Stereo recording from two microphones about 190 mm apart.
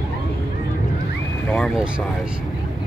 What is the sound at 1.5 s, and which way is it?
Speech, centre (ahead or behind).